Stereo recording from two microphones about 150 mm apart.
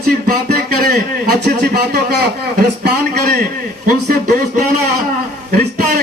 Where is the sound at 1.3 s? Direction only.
90° right.